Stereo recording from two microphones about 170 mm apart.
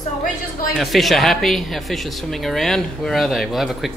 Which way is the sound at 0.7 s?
Centre (ahead or behind).